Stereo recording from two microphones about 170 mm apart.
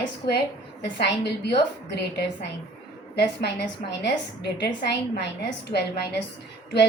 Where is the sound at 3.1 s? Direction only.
75° left (ahead or behind).